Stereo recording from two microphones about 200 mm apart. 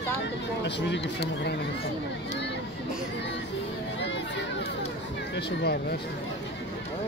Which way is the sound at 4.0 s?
60° left (ahead or behind).